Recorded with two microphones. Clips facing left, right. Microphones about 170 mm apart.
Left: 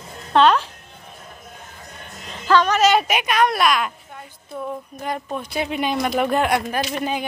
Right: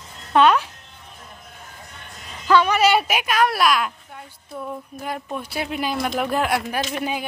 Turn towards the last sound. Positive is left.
turn(degrees=-5)  # may be behind; listen again after turning